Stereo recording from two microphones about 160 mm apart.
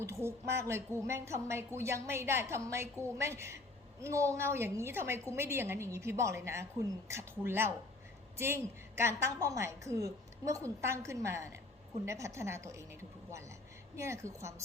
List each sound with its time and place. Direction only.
0.0 s a woman's voice: 15° right (ahead or behind)